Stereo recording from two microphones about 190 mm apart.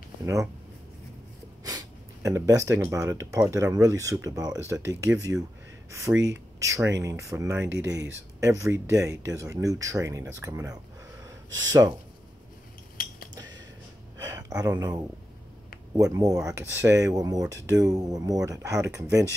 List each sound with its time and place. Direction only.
0.2 s speech: 15° right (ahead or behind)
1.6 s speech: 20° right (ahead or behind)
7.7 s speech: 70° right (ahead or behind)
8.1 s speech: 15° right (ahead or behind)
12.9 s cutlery: 50° left (ahead or behind)
14.2 s speech: 20° right (ahead or behind)